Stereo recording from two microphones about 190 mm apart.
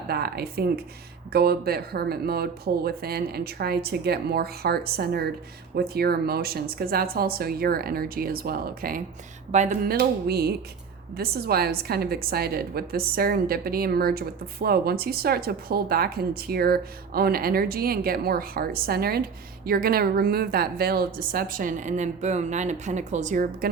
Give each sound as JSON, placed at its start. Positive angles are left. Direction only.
{"t": 0.1, "sound": "a woman's voice", "side_deg": -55}
{"t": 9.5, "sound": "speech", "side_deg": -40}
{"t": 9.8, "sound": "a woman's voice", "side_deg": -55}